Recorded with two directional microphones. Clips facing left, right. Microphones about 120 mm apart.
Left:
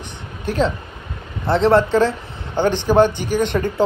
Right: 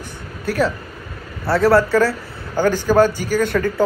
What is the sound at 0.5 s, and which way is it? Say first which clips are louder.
Speech: even; 25° left (ahead or behind).